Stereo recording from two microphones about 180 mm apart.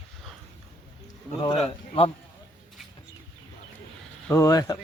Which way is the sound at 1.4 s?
35° left (ahead or behind).